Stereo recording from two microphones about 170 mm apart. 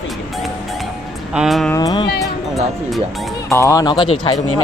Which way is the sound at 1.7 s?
20° left (ahead or behind).